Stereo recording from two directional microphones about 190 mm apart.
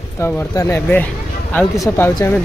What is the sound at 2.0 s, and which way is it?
Speech, 10° left (ahead or behind).